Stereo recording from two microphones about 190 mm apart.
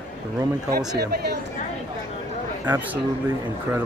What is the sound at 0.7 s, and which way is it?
Speech, 60° right (ahead or behind).